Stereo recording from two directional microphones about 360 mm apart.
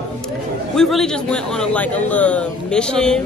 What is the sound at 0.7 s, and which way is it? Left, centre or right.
A man's voice, centre.